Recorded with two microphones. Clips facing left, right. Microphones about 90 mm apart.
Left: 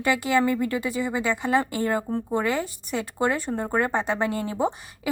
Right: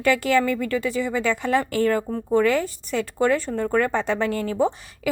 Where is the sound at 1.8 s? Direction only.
20° left (ahead or behind).